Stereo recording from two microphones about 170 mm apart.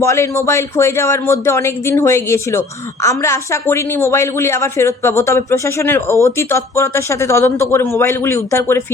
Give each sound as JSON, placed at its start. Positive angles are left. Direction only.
{"t": 0.0, "sound": "speech", "side_deg": 15}